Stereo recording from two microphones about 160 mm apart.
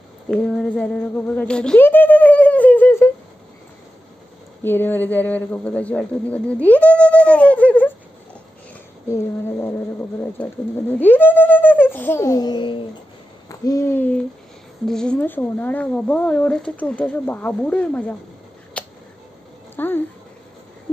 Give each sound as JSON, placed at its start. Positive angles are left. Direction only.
{"t": 0.3, "sound": "a sound", "side_deg": 5}
{"t": 4.6, "sound": "speech", "side_deg": 10}
{"t": 9.1, "sound": "speech", "side_deg": 15}
{"t": 13.5, "sound": "hoot", "side_deg": 20}
{"t": 14.9, "sound": "speech", "side_deg": 5}
{"t": 18.8, "sound": "a sound", "side_deg": 5}
{"t": 19.7, "sound": "speech", "side_deg": 10}